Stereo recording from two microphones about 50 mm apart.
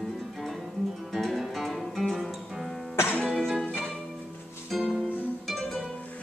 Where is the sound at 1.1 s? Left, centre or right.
Centre.